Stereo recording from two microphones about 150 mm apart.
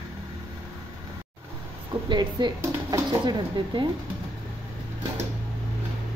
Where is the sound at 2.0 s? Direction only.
30° right (ahead or behind).